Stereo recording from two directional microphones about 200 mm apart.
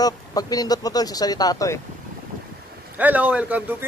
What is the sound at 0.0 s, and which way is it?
Speech, 20° left (ahead or behind).